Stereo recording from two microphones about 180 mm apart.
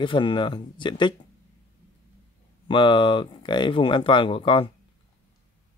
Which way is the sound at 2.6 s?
25° left (ahead or behind).